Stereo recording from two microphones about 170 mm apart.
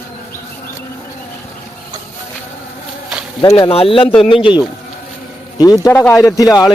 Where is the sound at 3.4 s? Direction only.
25° left (ahead or behind).